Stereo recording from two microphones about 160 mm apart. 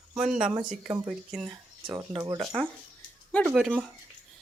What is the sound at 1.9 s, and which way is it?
Speech, 25° right (ahead or behind).